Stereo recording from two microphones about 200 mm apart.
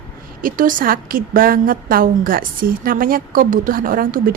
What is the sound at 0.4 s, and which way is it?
Speech, 45° right (ahead or behind).